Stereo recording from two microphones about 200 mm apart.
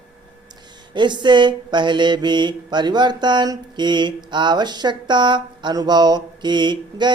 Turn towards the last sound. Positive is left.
turn(degrees=-20)  # may be behind; listen again after turning